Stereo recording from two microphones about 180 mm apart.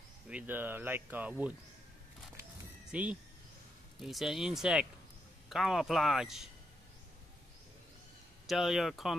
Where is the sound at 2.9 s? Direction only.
5° right (ahead or behind).